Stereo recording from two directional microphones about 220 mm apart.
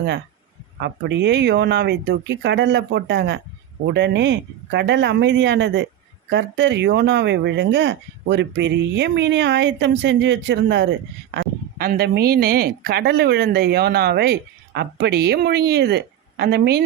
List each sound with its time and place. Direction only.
0.8 s speech: 50° right (ahead or behind)